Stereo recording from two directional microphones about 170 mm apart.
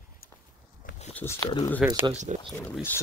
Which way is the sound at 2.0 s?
40° right (ahead or behind).